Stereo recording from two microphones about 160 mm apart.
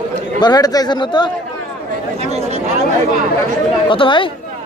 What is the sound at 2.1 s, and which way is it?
Speech, 45° right (ahead or behind).